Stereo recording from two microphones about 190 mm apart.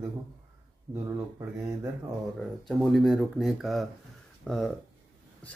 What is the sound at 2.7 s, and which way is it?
Speech, centre (ahead or behind).